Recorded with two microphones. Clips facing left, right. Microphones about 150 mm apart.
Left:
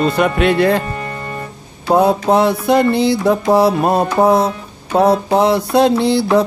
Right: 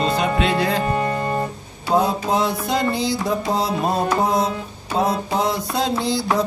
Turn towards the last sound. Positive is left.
turn(degrees=65)  # may be behind; listen again after turning